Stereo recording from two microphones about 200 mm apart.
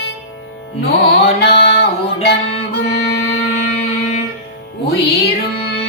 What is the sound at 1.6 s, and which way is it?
Music, 55° left (ahead or behind).